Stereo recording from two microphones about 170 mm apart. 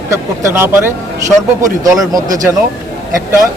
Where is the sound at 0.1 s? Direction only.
15° right (ahead or behind).